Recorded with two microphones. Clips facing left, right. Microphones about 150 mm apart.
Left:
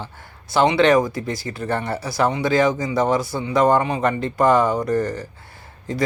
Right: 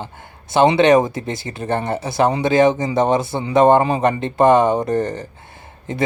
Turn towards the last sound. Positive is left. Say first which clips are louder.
# right 1 dB
turn(degrees=-20)  # may be behind; listen again after turning